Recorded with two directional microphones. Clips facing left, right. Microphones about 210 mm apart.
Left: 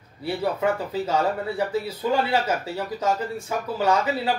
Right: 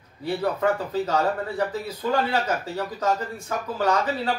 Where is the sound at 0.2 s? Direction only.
10° left (ahead or behind).